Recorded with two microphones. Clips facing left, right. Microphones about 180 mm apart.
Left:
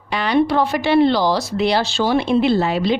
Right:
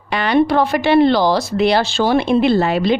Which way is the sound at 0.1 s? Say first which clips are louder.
Right 2 dB; 60° right (ahead or behind).